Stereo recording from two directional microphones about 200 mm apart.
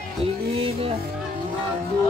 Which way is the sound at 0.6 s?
30° right (ahead or behind).